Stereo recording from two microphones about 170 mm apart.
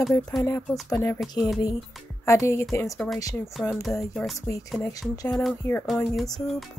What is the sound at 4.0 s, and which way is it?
Speech, centre (ahead or behind).